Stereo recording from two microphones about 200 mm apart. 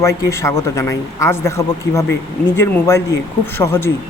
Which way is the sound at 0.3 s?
15° left (ahead or behind).